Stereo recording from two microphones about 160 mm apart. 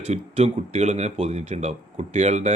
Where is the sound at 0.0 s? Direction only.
45° right (ahead or behind).